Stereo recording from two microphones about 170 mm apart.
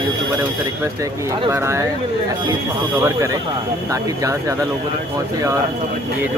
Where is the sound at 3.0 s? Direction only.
15° right (ahead or behind).